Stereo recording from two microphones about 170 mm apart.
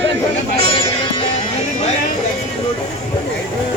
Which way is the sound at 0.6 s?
30° left (ahead or behind).